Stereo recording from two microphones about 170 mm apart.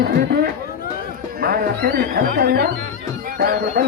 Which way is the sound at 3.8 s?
60° right (ahead or behind).